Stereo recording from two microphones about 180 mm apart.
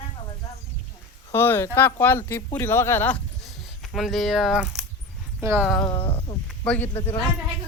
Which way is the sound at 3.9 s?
Centre (ahead or behind).